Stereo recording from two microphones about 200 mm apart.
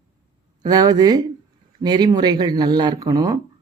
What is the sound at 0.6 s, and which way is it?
Speech, 20° right (ahead or behind).